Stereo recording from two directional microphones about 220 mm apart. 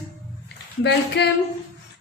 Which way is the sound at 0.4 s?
55° left (ahead or behind).